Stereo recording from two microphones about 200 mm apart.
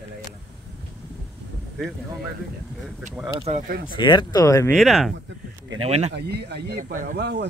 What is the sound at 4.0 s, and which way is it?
Speech, 25° left (ahead or behind).